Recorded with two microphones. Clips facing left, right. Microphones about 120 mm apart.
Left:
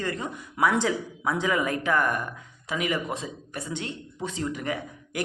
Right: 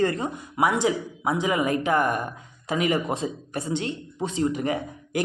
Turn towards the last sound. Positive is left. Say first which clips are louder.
# right 5 dB
turn(degrees=-25)  # may be behind; listen again after turning